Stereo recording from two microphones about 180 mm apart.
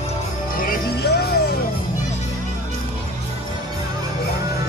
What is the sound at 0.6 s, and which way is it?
Music, 55° left (ahead or behind).